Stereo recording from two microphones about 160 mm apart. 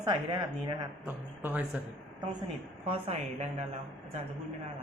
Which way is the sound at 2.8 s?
40° right (ahead or behind).